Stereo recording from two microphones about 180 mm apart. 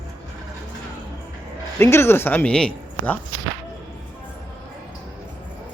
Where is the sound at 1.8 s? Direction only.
15° left (ahead or behind).